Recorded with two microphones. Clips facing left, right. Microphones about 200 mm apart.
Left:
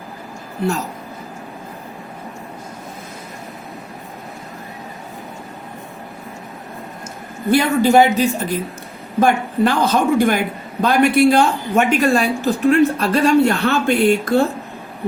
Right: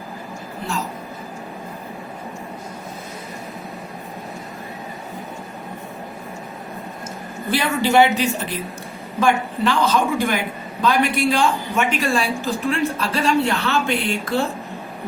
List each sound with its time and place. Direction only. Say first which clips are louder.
7.5 s a woman's voice: left 4 dB; 45° left (ahead or behind)